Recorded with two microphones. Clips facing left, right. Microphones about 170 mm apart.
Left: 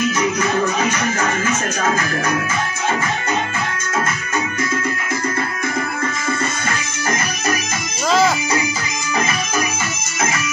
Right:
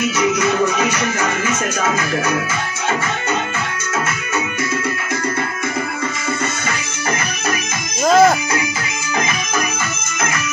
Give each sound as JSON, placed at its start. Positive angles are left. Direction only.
{"t": 8.1, "sound": "music", "side_deg": -50}